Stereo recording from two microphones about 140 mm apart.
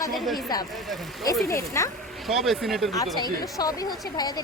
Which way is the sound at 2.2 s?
Centre (ahead or behind).